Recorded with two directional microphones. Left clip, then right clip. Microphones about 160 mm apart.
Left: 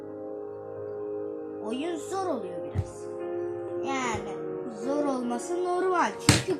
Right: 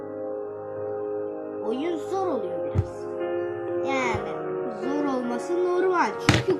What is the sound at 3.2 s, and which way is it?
Music, 30° right (ahead or behind).